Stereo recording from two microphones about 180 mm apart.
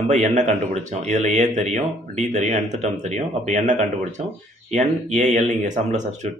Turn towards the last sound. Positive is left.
turn(degrees=-40)  # may be behind; listen again after turning